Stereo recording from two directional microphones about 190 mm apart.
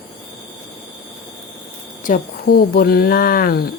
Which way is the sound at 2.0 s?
50° left (ahead or behind).